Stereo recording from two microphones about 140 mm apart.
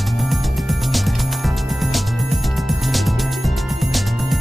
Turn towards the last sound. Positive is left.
turn(degrees=0)  # may be behind; listen again after turning